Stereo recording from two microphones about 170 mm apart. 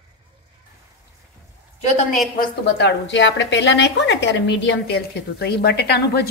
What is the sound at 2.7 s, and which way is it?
A woman's voice, 90° left.